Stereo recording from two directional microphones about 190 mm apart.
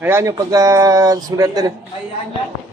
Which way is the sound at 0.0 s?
15° right (ahead or behind).